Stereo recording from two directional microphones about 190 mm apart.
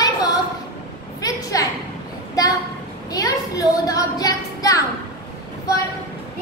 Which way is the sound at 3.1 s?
20° left (ahead or behind).